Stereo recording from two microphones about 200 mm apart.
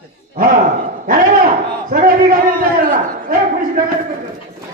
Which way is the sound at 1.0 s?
45° right (ahead or behind).